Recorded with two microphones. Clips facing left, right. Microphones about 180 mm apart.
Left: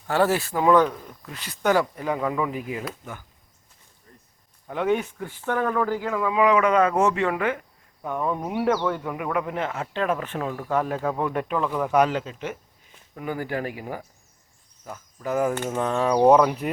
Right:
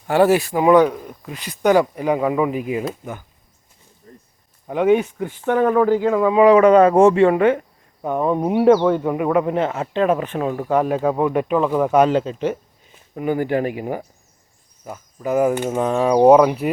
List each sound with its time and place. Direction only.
0.1 s speech: 15° right (ahead or behind)
4.1 s a sound: 40° right (ahead or behind)
4.7 s speech: 15° right (ahead or behind); by 12.5 s 30° right (ahead or behind)
13.1 s speech: 20° right (ahead or behind)